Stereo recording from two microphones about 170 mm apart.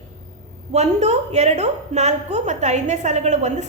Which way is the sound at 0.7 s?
40° right (ahead or behind).